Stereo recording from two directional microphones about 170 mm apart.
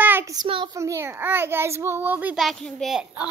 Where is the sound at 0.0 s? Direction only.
15° right (ahead or behind).